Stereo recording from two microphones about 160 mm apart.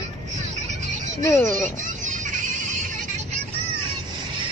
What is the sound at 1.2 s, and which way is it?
Speech, 15° left (ahead or behind).